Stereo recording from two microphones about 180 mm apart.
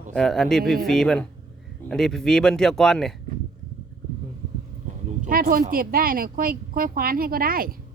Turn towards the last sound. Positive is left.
turn(degrees=-55)  # may be behind; listen again after turning